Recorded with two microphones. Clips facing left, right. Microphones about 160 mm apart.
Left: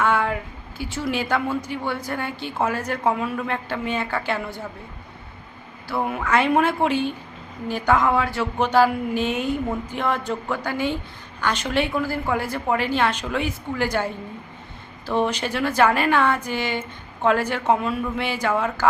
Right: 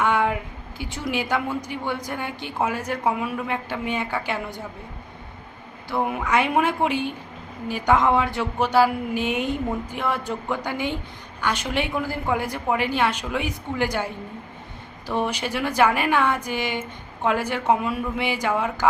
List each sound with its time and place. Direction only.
0.0 s a sound: 15° right (ahead or behind)
0.8 s a woman's voice: 20° right (ahead or behind)
5.9 s a woman's voice: 20° right (ahead or behind)
8.5 s a woman's voice: 10° right (ahead or behind)